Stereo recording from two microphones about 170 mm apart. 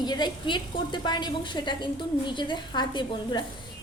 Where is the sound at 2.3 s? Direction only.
25° left (ahead or behind).